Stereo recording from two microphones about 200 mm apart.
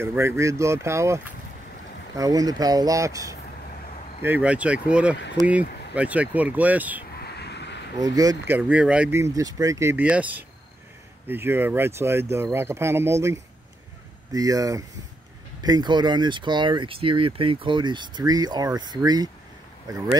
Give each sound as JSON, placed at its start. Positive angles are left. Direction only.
{"t": 0.0, "sound": "speech", "side_deg": -10}
{"t": 7.2, "sound": "vehicle", "side_deg": 55}
{"t": 8.0, "sound": "speech", "side_deg": -20}